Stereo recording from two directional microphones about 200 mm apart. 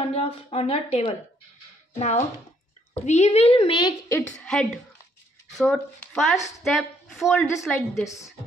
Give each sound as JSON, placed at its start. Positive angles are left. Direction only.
{"t": 0.1, "sound": "a woman's voice", "side_deg": 30}
{"t": 4.1, "sound": "a woman's voice", "side_deg": 5}